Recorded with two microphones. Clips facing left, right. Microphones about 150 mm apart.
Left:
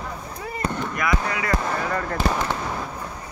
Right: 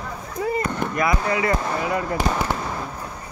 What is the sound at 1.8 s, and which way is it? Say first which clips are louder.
Speech: right 2 dB; 10° right (ahead or behind).